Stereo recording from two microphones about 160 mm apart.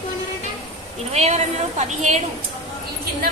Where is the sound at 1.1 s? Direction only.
45° right (ahead or behind).